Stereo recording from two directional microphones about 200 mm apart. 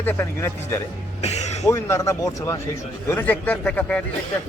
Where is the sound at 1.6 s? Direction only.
15° left (ahead or behind).